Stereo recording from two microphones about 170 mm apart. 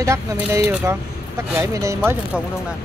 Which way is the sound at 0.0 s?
20° right (ahead or behind).